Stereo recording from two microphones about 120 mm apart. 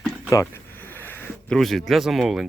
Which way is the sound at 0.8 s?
15° left (ahead or behind).